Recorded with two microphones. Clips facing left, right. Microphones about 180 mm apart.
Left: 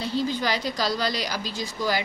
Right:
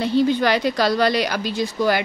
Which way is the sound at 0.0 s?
65° right (ahead or behind).